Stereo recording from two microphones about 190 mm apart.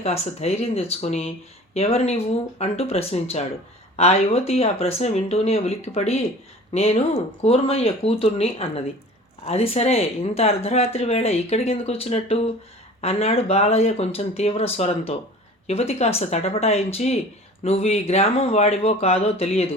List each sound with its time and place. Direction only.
0.0 s speech: 35° left (ahead or behind)